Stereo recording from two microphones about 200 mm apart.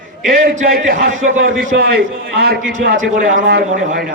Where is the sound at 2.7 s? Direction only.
40° right (ahead or behind).